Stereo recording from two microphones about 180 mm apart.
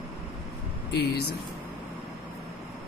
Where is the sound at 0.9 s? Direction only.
60° left (ahead or behind).